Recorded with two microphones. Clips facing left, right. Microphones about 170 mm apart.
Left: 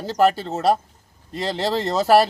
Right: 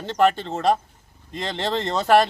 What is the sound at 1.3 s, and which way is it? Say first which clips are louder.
Speech: left 4 dB; 35° left (ahead or behind).